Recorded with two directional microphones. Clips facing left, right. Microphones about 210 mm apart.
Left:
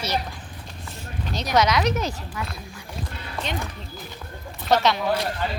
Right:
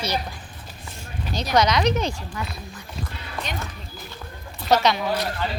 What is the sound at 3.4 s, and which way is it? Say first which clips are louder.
Speech: left 4 dB; 25° left (ahead or behind).